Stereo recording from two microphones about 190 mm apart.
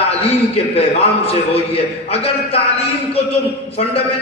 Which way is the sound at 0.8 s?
30° left (ahead or behind).